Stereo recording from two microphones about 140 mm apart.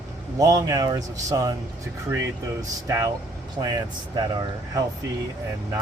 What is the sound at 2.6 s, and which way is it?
A man's voice, 20° right (ahead or behind).